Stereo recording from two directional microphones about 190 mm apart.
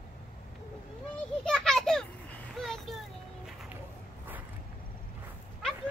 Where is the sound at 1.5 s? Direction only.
Centre (ahead or behind).